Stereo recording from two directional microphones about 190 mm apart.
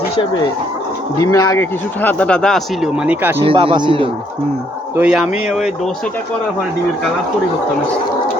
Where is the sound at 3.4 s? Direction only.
30° right (ahead or behind).